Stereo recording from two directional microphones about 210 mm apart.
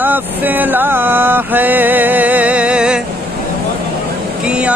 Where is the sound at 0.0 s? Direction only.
10° right (ahead or behind).